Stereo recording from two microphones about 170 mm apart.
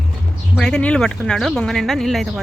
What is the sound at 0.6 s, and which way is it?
Speech, 5° left (ahead or behind).